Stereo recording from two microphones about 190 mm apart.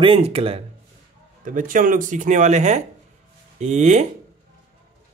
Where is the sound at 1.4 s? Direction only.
45° right (ahead or behind).